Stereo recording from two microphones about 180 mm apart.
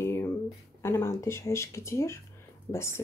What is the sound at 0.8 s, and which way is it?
Speech, 15° left (ahead or behind).